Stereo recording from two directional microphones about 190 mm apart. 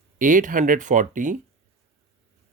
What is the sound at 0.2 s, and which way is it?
Speech, 45° right (ahead or behind).